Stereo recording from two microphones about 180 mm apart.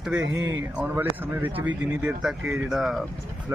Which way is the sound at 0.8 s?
10° right (ahead or behind).